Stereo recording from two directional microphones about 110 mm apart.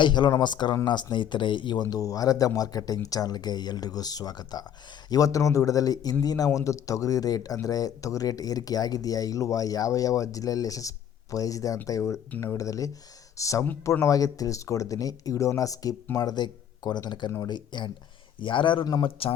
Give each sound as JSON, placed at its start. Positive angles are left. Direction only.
{"t": 0.0, "sound": "a man's voice", "side_deg": 45}
{"t": 12.3, "sound": "speech", "side_deg": 20}
{"t": 12.5, "sound": "a man's voice", "side_deg": 30}